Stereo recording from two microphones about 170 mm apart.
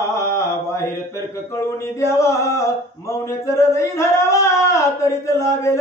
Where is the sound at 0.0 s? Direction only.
15° left (ahead or behind).